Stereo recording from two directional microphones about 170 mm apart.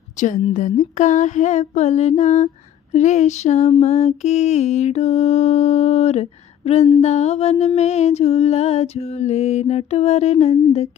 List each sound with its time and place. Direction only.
0.5 s mantra: 50° left (ahead or behind)